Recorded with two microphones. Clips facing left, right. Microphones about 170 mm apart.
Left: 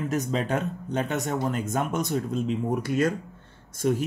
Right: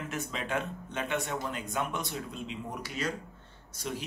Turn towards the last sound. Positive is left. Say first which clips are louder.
# left 12 dB
turn(degrees=50)  # may be behind; listen again after turning